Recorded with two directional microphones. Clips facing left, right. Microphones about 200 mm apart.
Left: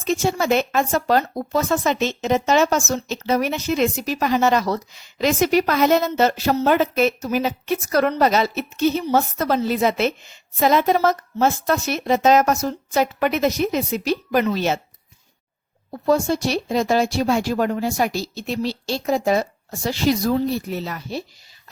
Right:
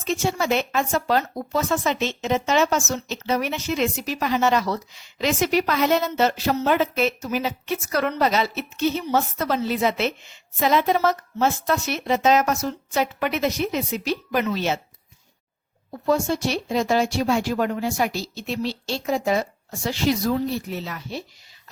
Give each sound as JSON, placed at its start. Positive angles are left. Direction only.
{"t": 0.0, "sound": "speech", "side_deg": 40}
{"t": 15.9, "sound": "speech", "side_deg": 35}